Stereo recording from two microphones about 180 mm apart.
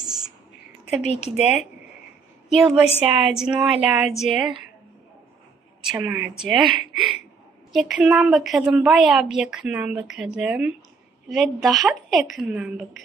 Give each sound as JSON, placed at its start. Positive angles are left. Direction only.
{"t": 1.3, "sound": "a woman's voice", "side_deg": -5}
{"t": 5.9, "sound": "a woman's voice", "side_deg": -10}
{"t": 6.5, "sound": "speech", "side_deg": -25}
{"t": 7.9, "sound": "a woman's voice", "side_deg": -5}